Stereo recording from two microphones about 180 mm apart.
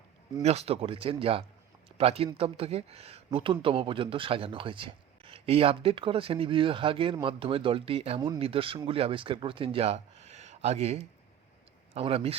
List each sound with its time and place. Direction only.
0.4 s a man's voice: 35° right (ahead or behind)